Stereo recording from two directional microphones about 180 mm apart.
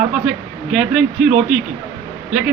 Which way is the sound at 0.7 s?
5° right (ahead or behind).